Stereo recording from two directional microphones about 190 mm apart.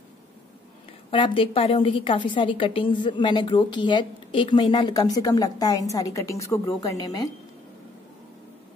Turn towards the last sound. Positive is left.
turn(degrees=20)  # may be behind; listen again after turning